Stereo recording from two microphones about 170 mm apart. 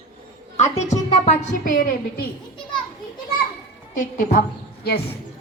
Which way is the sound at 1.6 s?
55° left (ahead or behind).